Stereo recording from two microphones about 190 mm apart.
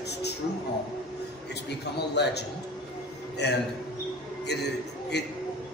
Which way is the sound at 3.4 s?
60° left (ahead or behind).